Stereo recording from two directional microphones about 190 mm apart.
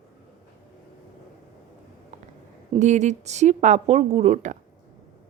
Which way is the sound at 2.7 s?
40° right (ahead or behind).